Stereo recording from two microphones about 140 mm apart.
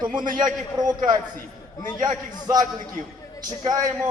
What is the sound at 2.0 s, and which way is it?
Speech, 30° right (ahead or behind).